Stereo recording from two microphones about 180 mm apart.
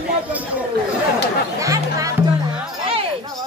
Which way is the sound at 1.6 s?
20° right (ahead or behind).